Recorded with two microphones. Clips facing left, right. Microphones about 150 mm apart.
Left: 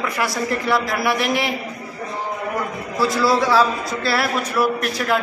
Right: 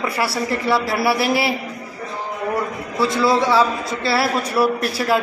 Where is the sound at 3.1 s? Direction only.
20° right (ahead or behind).